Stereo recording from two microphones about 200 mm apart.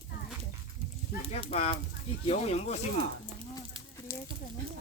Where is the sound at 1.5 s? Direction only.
30° left (ahead or behind).